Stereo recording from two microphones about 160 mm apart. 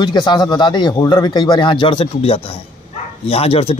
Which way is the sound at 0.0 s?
25° left (ahead or behind).